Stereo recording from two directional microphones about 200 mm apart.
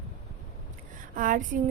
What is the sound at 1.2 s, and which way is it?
Speech, 40° right (ahead or behind).